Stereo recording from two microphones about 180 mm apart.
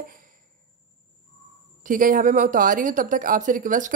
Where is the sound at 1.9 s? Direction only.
50° right (ahead or behind).